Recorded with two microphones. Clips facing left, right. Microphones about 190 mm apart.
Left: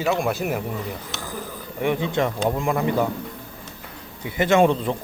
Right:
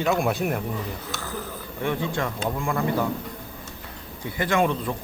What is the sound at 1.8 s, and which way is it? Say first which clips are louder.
Speech: left 4 dB; 15° left (ahead or behind).